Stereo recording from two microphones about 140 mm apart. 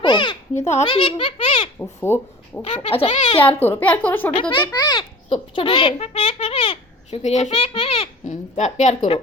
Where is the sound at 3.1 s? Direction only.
60° left (ahead or behind).